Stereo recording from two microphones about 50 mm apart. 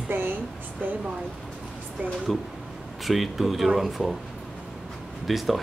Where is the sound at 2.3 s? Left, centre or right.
Centre.